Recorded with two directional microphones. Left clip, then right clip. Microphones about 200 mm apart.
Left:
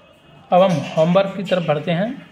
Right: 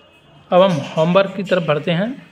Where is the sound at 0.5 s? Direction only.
15° right (ahead or behind).